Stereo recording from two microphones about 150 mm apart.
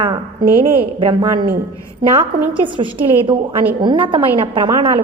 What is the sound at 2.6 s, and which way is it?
A woman's voice, 35° right (ahead or behind).